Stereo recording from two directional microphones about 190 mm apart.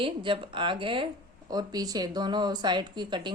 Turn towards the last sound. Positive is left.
turn(degrees=-25)  # may be behind; listen again after turning